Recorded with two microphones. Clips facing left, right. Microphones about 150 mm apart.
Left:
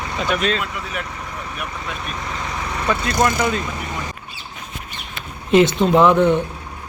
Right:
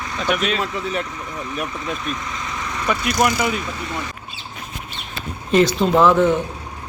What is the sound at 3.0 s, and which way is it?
Speech, 25° left (ahead or behind).